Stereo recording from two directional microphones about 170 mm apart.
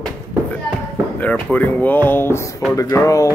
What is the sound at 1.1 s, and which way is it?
Speech, 5° left (ahead or behind).